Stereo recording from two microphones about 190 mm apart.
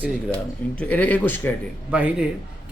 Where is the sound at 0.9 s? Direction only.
10° left (ahead or behind).